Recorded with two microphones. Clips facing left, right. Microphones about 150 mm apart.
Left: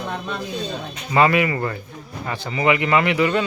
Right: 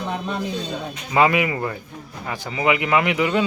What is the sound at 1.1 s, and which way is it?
Speech, 10° right (ahead or behind).